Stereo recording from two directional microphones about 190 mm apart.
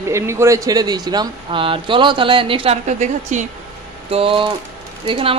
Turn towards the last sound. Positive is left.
turn(degrees=-30)  # may be behind; listen again after turning